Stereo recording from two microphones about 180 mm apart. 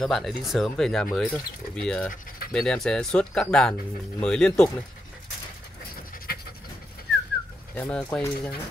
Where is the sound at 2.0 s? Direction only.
55° left (ahead or behind).